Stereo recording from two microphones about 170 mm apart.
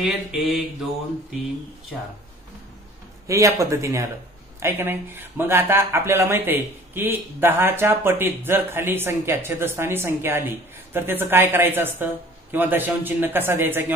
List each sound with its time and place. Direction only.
0.0 s mantra: 5° right (ahead or behind)
3.3 s speech: 20° right (ahead or behind)